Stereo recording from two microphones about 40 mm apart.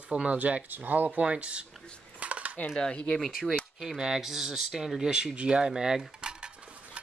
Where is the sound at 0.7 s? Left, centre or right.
Right.